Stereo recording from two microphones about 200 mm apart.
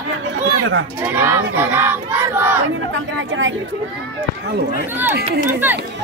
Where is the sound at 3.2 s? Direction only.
70° right (ahead or behind).